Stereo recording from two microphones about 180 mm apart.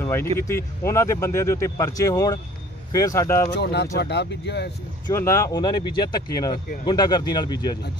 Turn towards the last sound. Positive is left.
turn(degrees=25)  # may be behind; listen again after turning